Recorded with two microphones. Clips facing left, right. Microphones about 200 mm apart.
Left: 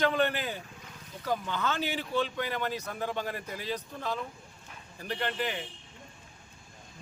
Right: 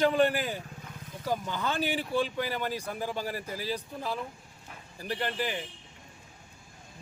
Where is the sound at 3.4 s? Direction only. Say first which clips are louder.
Right 1 dB; 35° right (ahead or behind).